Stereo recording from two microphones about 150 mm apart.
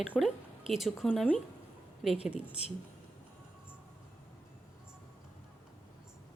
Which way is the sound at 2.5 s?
45° left (ahead or behind).